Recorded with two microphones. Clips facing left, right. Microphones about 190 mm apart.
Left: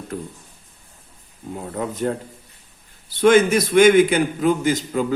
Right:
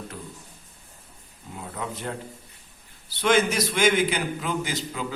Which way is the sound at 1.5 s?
45° left (ahead or behind).